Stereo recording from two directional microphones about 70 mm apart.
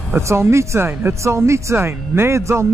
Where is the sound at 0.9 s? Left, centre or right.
Right.